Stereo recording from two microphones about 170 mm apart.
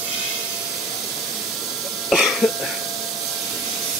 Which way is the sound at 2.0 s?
Centre (ahead or behind).